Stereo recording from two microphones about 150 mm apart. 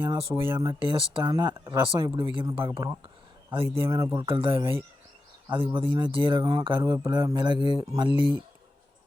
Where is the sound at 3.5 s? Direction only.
35° right (ahead or behind).